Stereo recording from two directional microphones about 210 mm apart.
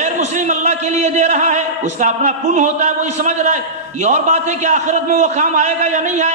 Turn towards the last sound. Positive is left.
turn(degrees=-35)  # may be behind; listen again after turning